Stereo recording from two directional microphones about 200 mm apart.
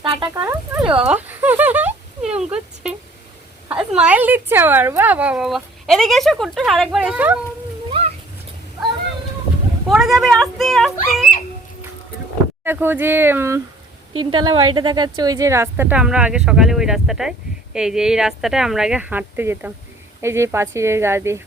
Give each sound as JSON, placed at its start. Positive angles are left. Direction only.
{"t": 0.0, "sound": "speech", "side_deg": -25}
{"t": 0.4, "sound": "speech", "side_deg": -10}
{"t": 1.0, "sound": "a sound", "side_deg": -10}
{"t": 3.7, "sound": "speech", "side_deg": -5}
{"t": 7.9, "sound": "a sound", "side_deg": -25}
{"t": 9.9, "sound": "speech", "side_deg": 0}
{"t": 12.6, "sound": "speech", "side_deg": -10}
{"t": 14.3, "sound": "speech", "side_deg": -25}